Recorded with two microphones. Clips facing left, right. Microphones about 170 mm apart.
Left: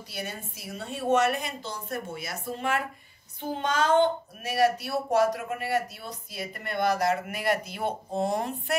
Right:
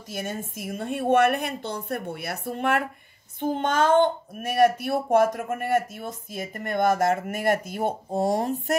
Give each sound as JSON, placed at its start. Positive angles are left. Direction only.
{"t": 0.1, "sound": "a woman's voice", "side_deg": -45}